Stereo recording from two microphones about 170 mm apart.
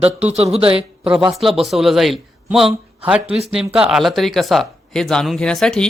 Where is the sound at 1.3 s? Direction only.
Centre (ahead or behind).